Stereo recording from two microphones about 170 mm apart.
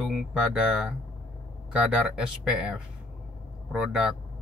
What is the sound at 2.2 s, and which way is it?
Speech, 5° right (ahead or behind).